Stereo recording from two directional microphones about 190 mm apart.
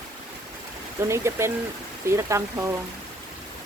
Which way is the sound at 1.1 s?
15° right (ahead or behind).